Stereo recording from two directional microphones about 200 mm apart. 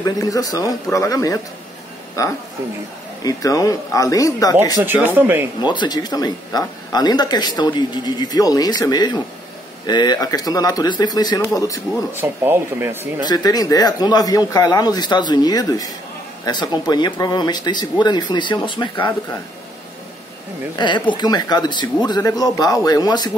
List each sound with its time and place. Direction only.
0.0 s speech: 15° left (ahead or behind)
4.8 s speech: 10° right (ahead or behind)
5.6 s speech: 20° left (ahead or behind)
12.1 s speech: 10° right (ahead or behind)
13.2 s speech: 20° left (ahead or behind)
20.7 s speech: 25° left (ahead or behind)